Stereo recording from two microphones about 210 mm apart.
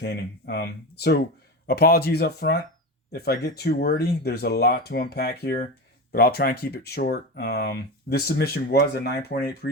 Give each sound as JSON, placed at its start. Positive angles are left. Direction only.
{"t": 0.0, "sound": "speech", "side_deg": 50}